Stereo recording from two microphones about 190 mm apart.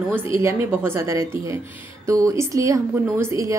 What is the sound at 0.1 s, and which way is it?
A woman's voice, 15° right (ahead or behind).